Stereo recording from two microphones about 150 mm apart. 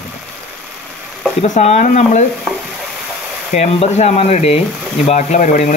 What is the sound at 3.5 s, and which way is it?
Speech, 50° left (ahead or behind).